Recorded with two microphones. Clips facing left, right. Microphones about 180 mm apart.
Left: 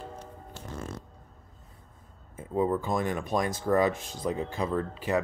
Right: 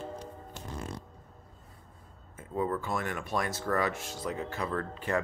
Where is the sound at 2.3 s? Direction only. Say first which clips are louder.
Left 5 dB; 20° left (ahead or behind).